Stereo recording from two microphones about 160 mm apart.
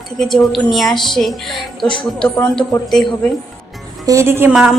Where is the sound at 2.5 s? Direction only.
Centre (ahead or behind).